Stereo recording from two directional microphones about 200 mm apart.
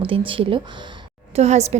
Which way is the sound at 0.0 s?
25° right (ahead or behind).